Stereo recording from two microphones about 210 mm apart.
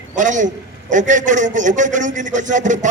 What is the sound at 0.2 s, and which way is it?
A man's voice, 35° right (ahead or behind).